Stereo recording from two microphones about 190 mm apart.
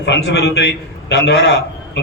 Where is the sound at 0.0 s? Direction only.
65° left (ahead or behind).